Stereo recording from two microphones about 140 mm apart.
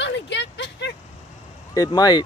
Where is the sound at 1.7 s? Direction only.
25° left (ahead or behind).